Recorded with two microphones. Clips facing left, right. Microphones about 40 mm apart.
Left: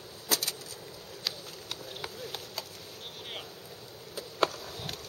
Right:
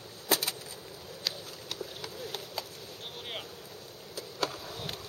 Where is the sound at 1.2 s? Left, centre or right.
Centre.